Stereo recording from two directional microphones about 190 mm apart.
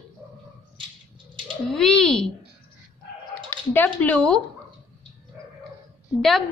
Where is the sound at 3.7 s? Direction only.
10° left (ahead or behind).